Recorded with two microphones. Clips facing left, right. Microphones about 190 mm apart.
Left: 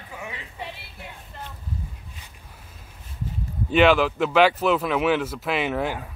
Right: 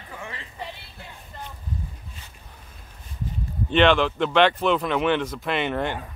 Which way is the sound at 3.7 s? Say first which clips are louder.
Left 1 dB; 5° left (ahead or behind).